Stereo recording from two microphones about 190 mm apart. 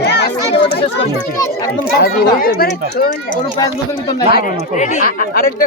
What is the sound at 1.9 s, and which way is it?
Speech, 55° left (ahead or behind).